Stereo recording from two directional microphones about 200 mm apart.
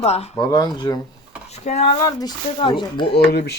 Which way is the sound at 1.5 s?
35° left (ahead or behind).